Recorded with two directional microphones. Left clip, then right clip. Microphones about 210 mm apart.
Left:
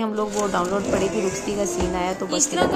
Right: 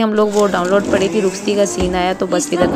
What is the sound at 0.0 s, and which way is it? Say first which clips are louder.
A woman's voice: right 10 dB; 25° right (ahead or behind).